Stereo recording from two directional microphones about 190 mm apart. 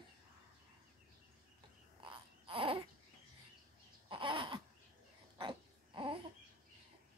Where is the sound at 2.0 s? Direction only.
25° right (ahead or behind).